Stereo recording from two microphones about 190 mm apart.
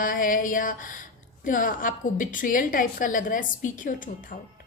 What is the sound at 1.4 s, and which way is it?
A woman's voice, 45° left (ahead or behind).